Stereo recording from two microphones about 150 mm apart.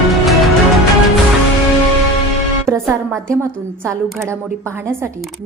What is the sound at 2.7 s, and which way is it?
Music, 20° right (ahead or behind).